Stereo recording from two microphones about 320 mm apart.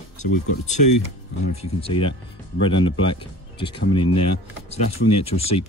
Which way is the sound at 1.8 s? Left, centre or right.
Centre.